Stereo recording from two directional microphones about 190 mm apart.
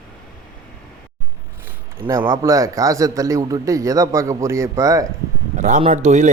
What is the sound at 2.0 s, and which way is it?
A man's voice, 15° right (ahead or behind).